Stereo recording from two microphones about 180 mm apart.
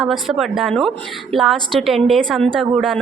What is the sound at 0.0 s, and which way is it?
A woman's voice, centre (ahead or behind).